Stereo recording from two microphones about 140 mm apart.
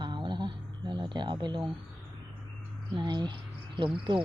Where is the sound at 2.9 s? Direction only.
35° right (ahead or behind).